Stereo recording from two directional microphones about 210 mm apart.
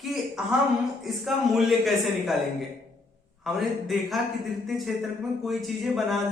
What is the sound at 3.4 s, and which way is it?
Speech, centre (ahead or behind).